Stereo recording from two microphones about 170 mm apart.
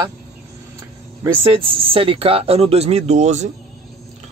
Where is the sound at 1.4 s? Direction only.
30° right (ahead or behind).